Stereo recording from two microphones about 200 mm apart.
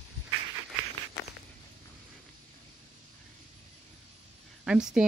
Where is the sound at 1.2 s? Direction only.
55° left (ahead or behind).